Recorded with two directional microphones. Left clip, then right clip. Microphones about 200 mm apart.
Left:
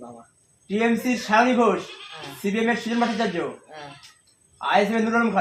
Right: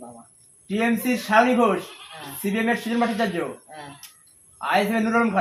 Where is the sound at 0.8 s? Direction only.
10° right (ahead or behind).